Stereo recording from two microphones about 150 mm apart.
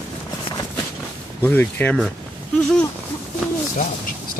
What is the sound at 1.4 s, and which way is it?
Speech, 10° left (ahead or behind).